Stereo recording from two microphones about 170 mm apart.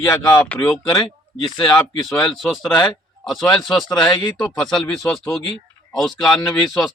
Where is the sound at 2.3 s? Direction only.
Centre (ahead or behind).